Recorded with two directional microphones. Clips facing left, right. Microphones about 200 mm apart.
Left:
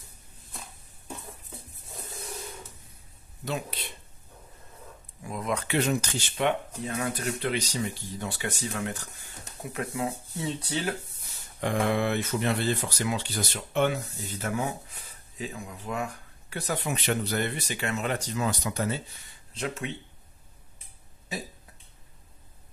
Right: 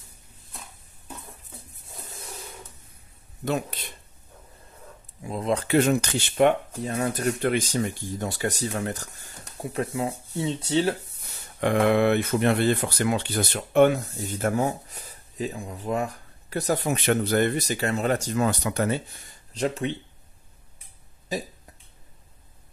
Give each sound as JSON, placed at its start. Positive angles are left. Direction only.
{"t": 3.4, "sound": "speech", "side_deg": -45}
{"t": 5.2, "sound": "speech", "side_deg": -30}
{"t": 5.8, "sound": "speech", "side_deg": -60}
{"t": 6.9, "sound": "speech", "side_deg": -40}
{"t": 9.6, "sound": "speech", "side_deg": -30}
{"t": 11.6, "sound": "speech", "side_deg": -65}